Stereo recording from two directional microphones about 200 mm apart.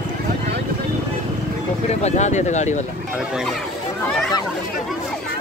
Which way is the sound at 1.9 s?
35° left (ahead or behind).